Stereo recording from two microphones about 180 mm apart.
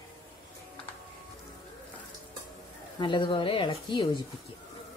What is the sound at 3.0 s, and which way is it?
Speech, 25° left (ahead or behind).